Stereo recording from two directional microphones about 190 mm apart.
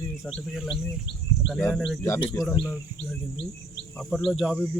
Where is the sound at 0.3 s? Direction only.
Centre (ahead or behind).